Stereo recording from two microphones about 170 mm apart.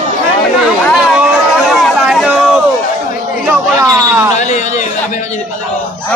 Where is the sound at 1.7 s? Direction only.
Centre (ahead or behind).